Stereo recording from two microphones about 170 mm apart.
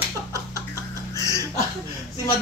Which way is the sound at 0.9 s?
20° right (ahead or behind).